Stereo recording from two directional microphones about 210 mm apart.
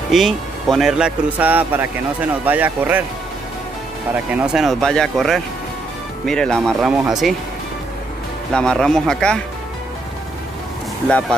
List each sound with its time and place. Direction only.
0.1 s speech: centre (ahead or behind)
4.3 s speech: 5° right (ahead or behind)
8.5 s speech: 5° left (ahead or behind)
11.1 s speech: 5° left (ahead or behind)